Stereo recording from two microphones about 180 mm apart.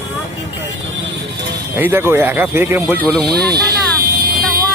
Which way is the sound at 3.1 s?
Centre (ahead or behind).